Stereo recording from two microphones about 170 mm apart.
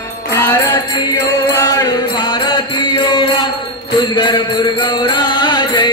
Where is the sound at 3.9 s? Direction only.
25° left (ahead or behind).